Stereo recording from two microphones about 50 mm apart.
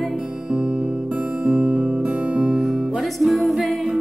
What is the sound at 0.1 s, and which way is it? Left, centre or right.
Music, centre.